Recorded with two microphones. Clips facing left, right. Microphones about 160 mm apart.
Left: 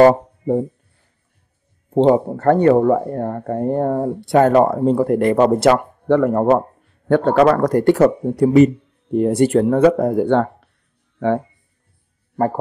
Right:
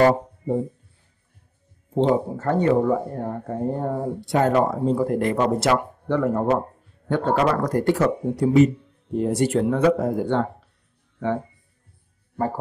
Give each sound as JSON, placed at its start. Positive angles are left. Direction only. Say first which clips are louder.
{"t": 0.0, "sound": "speech", "louder": "left 6 dB", "side_deg": 60}
{"t": 2.0, "sound": "speech", "louder": "left 8 dB", "side_deg": 65}